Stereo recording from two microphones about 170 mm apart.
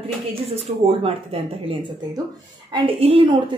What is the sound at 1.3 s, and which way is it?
Speech, 35° right (ahead or behind).